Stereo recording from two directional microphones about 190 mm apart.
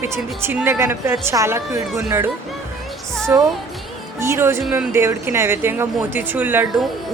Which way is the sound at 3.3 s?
15° right (ahead or behind).